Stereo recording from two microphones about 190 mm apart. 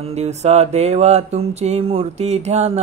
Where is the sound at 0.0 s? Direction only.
35° right (ahead or behind).